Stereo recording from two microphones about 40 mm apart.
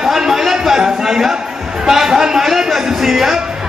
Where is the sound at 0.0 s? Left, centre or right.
Centre.